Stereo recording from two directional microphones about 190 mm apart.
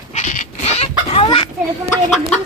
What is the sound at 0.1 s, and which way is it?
Chicken, 40° left (ahead or behind).